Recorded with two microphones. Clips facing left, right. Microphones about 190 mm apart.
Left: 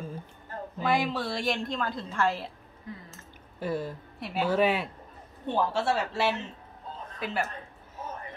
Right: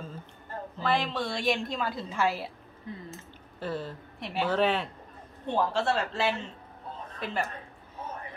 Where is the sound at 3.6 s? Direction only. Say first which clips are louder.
Left 3 dB; 10° left (ahead or behind).